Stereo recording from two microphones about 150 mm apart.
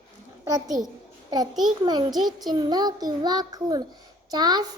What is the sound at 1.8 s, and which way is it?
A child's voice, 30° right (ahead or behind).